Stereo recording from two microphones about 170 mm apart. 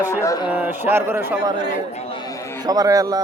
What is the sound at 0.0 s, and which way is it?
Speech, 20° left (ahead or behind).